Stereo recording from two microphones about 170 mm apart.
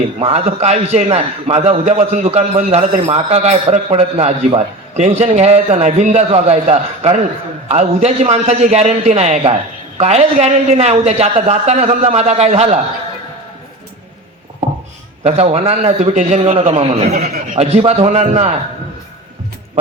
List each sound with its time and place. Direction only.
0.2 s a man's voice: 40° right (ahead or behind)
15.2 s a man's voice: 40° right (ahead or behind)